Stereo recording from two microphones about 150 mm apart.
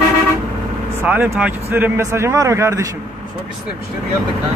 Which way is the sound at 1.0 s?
10° right (ahead or behind).